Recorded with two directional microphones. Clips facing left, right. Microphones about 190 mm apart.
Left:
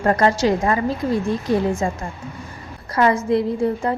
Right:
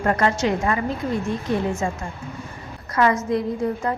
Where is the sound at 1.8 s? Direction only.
35° left (ahead or behind).